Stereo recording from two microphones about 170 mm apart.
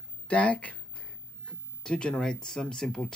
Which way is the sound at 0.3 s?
10° left (ahead or behind).